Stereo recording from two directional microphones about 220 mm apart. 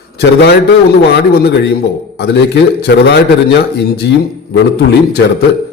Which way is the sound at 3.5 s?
50° left (ahead or behind).